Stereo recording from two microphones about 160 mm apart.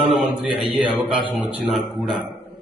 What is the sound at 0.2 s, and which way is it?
Mantra, centre (ahead or behind).